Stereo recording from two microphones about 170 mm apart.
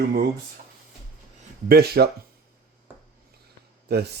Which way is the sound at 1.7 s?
70° right (ahead or behind).